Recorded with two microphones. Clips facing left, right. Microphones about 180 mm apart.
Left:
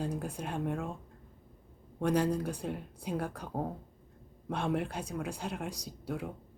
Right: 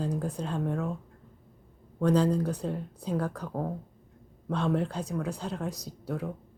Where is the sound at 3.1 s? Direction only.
75° right (ahead or behind).